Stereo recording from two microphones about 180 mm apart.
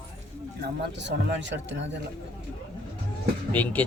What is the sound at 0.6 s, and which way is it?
Speech, 75° right (ahead or behind).